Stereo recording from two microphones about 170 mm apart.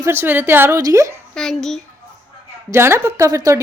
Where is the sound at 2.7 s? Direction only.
15° right (ahead or behind).